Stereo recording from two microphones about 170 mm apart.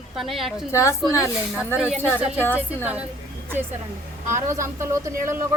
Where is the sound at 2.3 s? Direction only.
10° left (ahead or behind).